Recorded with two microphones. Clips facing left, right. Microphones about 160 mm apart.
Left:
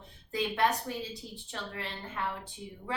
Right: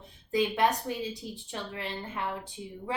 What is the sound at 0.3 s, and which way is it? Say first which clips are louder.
A woman's voice: right 3 dB; 15° right (ahead or behind).